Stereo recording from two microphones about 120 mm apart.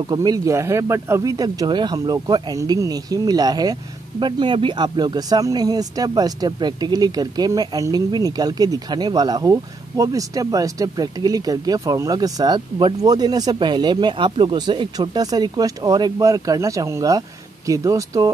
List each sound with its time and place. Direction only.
0.0 s speech: 35° right (ahead or behind)